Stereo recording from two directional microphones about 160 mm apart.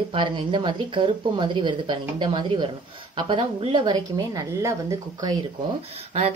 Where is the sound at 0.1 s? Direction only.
30° right (ahead or behind).